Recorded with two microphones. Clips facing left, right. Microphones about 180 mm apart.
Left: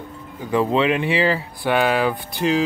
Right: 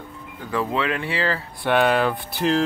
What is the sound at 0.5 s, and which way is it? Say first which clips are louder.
Speech: left 6 dB; 20° left (ahead or behind).